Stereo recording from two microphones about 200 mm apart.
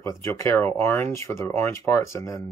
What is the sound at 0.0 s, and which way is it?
Speech, 10° left (ahead or behind).